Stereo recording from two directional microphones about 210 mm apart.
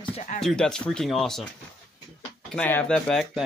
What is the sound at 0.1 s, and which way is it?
Music, 35° left (ahead or behind).